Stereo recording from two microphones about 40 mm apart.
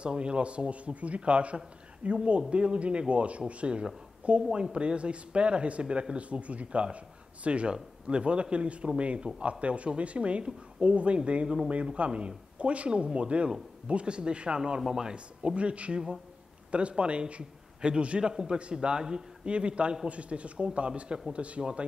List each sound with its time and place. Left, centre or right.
0.0 s speech: right
4.4 s speech: centre
11.4 s a man's voice: centre
12.0 s speech: right
14.8 s a man's voice: centre
15.1 s a man's voice: right